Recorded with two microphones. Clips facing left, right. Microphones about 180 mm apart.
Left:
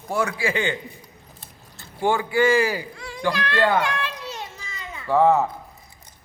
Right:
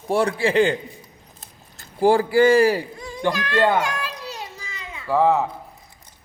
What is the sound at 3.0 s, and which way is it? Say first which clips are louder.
Speech: right 1 dB; 20° right (ahead or behind).